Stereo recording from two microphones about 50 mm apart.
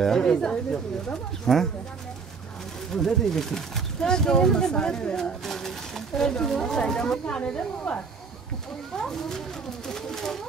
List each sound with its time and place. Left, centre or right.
0.0 s speech: centre
2.9 s speech: centre; by 8.0 s left
8.9 s speech: centre